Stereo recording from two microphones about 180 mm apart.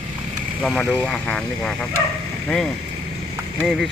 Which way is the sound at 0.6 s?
Centre (ahead or behind).